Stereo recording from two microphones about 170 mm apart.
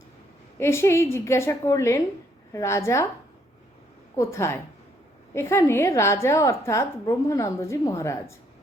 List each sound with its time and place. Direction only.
0.6 s a woman's voice: 15° left (ahead or behind)
4.1 s a woman's voice: 15° left (ahead or behind)